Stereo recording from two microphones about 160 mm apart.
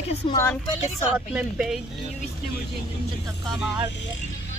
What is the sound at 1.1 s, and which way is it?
Speech, 10° right (ahead or behind).